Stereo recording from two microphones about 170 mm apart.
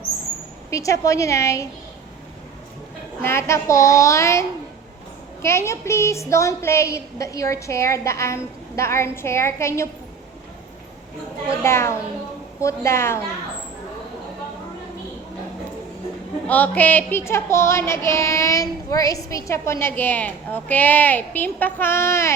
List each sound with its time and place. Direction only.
0.7 s a woman's voice: 20° left (ahead or behind)
3.2 s female singing: 15° left (ahead or behind)
11.4 s female singing: 15° left (ahead or behind)
16.5 s female singing: 10° left (ahead or behind)